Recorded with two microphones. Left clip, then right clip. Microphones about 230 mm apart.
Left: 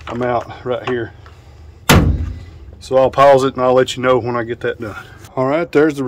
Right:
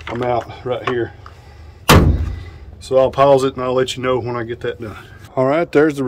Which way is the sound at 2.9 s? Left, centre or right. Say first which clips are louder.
Left 2 dB; centre.